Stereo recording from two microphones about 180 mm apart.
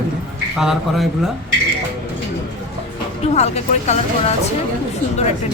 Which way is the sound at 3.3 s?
40° left (ahead or behind).